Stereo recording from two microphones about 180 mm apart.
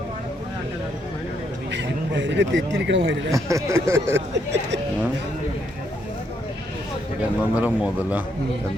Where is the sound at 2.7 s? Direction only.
80° right.